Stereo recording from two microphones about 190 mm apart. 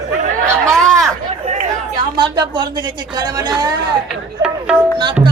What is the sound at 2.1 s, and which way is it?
Speech, 25° right (ahead or behind).